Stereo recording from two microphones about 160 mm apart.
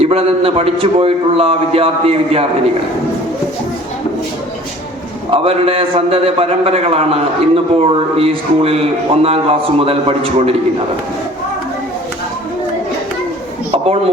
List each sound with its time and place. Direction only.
0.0 s a man's voice: 40° right (ahead or behind)
5.3 s a man's voice: 35° right (ahead or behind)